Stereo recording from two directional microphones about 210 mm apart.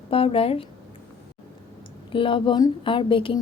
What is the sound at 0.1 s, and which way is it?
Speech, 25° left (ahead or behind).